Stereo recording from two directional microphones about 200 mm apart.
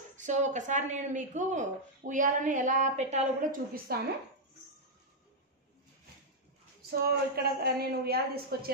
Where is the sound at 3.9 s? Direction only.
50° right (ahead or behind).